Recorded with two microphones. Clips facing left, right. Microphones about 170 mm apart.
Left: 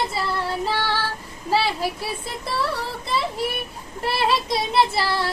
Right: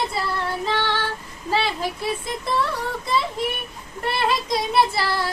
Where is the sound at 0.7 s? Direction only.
10° left (ahead or behind).